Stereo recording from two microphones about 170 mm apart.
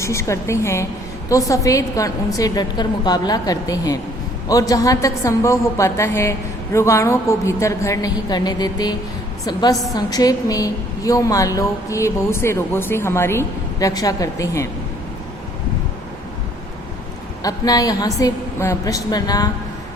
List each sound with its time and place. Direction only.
0.0 s a woman's voice: 15° left (ahead or behind)
17.4 s a woman's voice: 20° left (ahead or behind)